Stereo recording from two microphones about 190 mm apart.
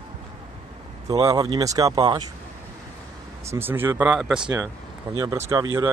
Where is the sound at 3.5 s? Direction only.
10° right (ahead or behind).